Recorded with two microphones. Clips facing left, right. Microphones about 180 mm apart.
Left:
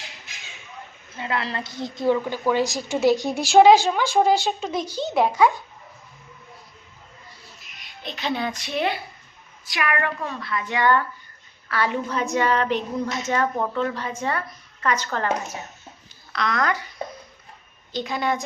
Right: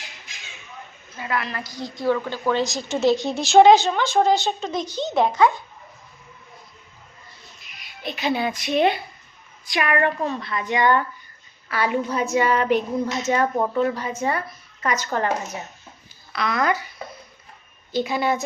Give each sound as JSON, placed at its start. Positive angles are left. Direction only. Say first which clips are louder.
{"t": 1.1, "sound": "a woman's voice", "louder": "even", "side_deg": 25}
{"t": 7.4, "sound": "a sound", "louder": "even", "side_deg": 0}
{"t": 9.6, "sound": "a woman's voice", "louder": "right 4 dB", "side_deg": -25}
{"t": 16.3, "sound": "speech", "louder": "right 2 dB", "side_deg": -5}
{"t": 17.9, "sound": "a woman's voice", "louder": "right 3 dB", "side_deg": -5}